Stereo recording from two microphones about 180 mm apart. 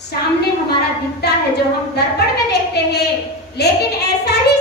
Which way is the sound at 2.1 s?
65° left (ahead or behind).